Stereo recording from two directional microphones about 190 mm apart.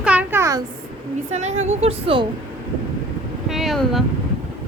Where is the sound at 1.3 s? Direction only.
35° right (ahead or behind).